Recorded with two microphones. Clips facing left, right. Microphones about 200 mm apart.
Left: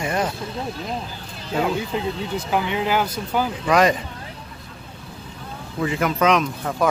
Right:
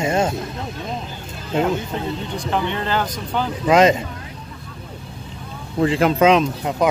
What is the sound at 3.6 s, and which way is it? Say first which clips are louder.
Speech: right 5 dB; 20° right (ahead or behind).